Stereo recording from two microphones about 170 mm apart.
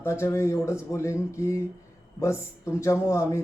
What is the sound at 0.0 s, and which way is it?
A man's voice, 15° left (ahead or behind).